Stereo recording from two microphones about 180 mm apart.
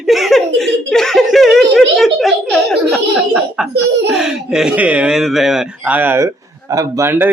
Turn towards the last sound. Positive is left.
turn(degrees=-15)  # may be behind; listen again after turning